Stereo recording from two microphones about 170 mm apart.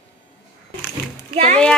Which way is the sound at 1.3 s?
45° right (ahead or behind).